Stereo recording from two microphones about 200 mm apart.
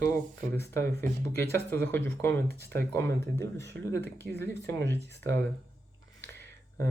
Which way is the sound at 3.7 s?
60° right (ahead or behind).